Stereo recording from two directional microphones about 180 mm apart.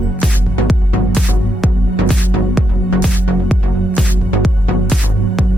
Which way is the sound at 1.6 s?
Centre (ahead or behind).